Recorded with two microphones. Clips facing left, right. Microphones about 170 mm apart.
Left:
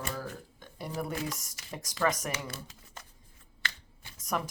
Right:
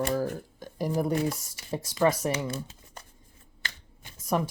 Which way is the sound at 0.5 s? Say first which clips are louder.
Right 8 dB; 40° right (ahead or behind).